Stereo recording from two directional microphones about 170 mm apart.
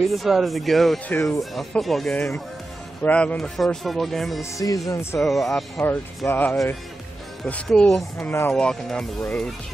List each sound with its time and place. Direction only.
0.1 s speech: centre (ahead or behind)
4.4 s speech: 20° left (ahead or behind)
5.2 s speech: centre (ahead or behind)
5.9 s speech: 10° left (ahead or behind)